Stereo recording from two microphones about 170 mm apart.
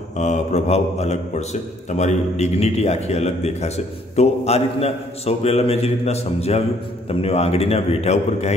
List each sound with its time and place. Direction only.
0.2 s a man's voice: 40° left (ahead or behind)